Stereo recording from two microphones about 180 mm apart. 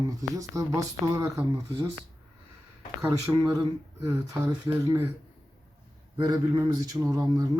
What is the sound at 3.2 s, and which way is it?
Speech, 20° right (ahead or behind).